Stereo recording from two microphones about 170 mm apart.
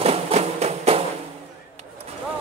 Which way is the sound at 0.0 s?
40° right (ahead or behind).